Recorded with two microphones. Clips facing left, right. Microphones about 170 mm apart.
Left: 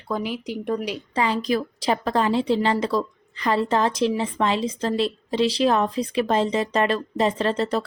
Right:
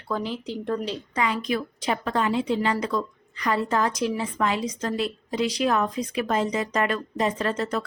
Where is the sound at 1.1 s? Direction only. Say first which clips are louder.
Left 4 dB; 30° left (ahead or behind).